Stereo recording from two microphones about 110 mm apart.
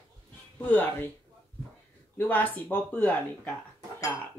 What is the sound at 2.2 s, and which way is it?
Speech, 15° left (ahead or behind).